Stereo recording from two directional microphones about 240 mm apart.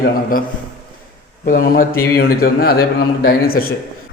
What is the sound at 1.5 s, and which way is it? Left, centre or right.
A man's voice, left.